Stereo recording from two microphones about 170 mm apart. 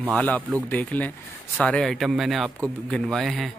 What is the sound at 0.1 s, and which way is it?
A man's voice, 10° left (ahead or behind).